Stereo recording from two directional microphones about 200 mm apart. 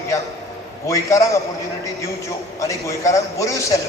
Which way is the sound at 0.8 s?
15° left (ahead or behind).